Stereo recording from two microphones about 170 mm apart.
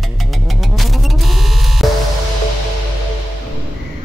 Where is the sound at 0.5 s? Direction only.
Centre (ahead or behind).